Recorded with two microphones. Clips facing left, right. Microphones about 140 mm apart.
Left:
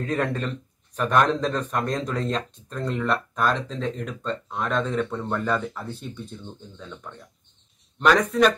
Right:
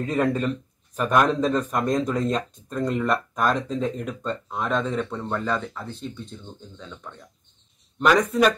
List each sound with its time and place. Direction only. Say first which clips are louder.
0.0 s speech: right 3 dB; 5° right (ahead or behind)